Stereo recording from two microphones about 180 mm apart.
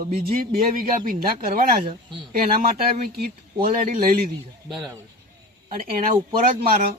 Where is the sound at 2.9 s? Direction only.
55° right (ahead or behind).